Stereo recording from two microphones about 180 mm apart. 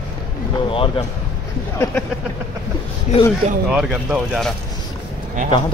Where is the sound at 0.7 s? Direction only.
30° left (ahead or behind).